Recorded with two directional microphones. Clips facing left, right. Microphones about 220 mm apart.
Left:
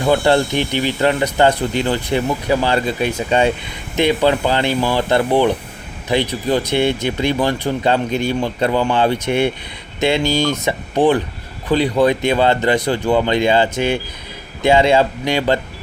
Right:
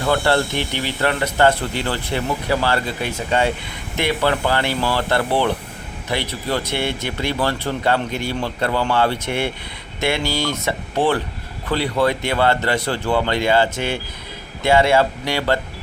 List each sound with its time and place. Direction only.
0.0 s speech: 15° left (ahead or behind)